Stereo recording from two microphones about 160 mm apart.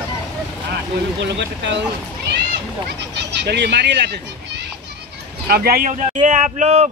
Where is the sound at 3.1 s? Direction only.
90° right.